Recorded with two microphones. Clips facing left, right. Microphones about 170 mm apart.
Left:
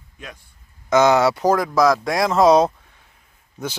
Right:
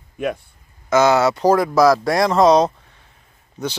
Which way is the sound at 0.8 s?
15° left (ahead or behind).